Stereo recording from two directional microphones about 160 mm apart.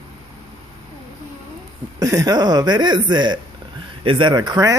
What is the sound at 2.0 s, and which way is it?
Speech, 20° right (ahead or behind).